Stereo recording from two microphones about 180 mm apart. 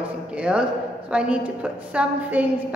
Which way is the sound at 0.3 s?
5° right (ahead or behind).